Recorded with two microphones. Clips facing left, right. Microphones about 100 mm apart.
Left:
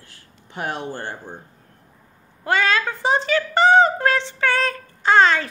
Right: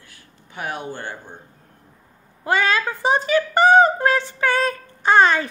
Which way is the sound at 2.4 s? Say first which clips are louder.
Even; 15° right (ahead or behind).